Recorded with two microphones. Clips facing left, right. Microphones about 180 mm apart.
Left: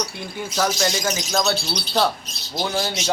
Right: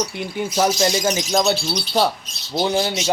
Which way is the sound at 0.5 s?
20° right (ahead or behind).